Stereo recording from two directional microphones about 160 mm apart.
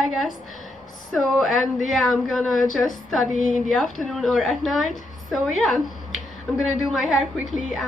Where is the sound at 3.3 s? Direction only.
55° left (ahead or behind).